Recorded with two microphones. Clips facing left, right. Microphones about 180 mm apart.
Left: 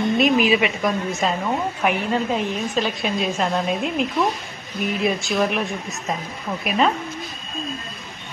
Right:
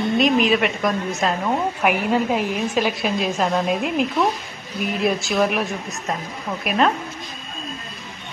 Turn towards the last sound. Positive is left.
turn(degrees=0)  # may be behind; listen again after turning